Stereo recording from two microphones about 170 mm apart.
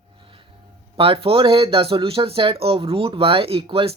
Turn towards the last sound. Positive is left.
turn(degrees=-30)  # may be behind; listen again after turning